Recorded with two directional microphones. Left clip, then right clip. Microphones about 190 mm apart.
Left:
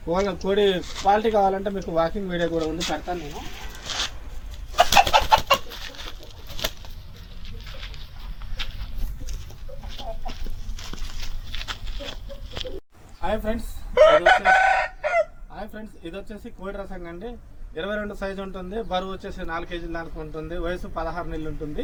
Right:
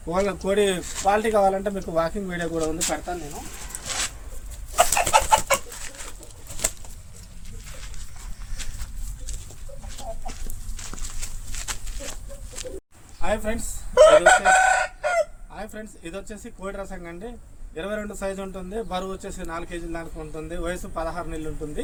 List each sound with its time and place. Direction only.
0.0 s a man's voice: 10° right (ahead or behind)
5.1 s chicken: 15° right (ahead or behind)
11.7 s a sound: 30° right (ahead or behind)
13.2 s a sound: centre (ahead or behind)
14.0 s chicken: 15° left (ahead or behind)
15.5 s a man's voice: centre (ahead or behind)